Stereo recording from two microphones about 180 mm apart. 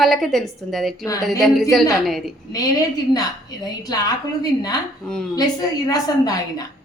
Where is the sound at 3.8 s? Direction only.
20° left (ahead or behind).